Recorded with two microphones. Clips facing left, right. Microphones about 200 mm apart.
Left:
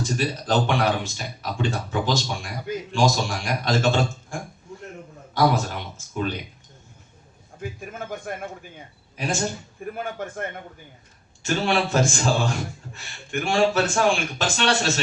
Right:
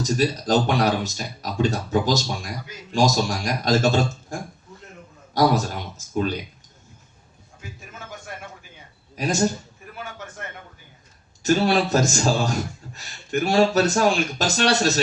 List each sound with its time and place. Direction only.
0.0 s a man's voice: 40° right (ahead or behind)
7.6 s a sound: 55° left (ahead or behind)
9.1 s speech: 40° right (ahead or behind)
9.8 s speech: 50° left (ahead or behind)
11.4 s speech: 40° right (ahead or behind)